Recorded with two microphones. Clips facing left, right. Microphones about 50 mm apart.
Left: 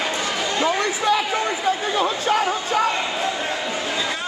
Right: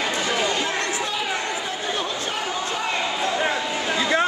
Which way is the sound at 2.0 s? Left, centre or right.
Left.